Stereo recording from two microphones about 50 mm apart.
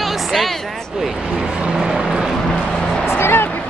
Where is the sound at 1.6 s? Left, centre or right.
Centre.